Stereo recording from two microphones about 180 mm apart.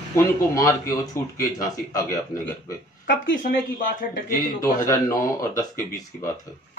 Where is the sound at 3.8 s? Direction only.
45° left (ahead or behind).